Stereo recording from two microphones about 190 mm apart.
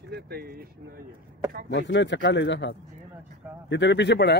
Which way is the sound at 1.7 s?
70° left (ahead or behind).